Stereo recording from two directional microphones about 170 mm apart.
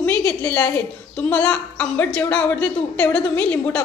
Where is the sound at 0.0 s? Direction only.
10° left (ahead or behind).